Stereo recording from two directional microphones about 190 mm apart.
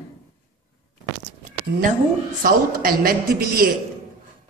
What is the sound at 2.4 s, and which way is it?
Speech, 50° right (ahead or behind).